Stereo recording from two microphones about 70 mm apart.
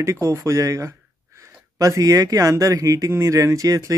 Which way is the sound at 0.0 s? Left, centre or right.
Right.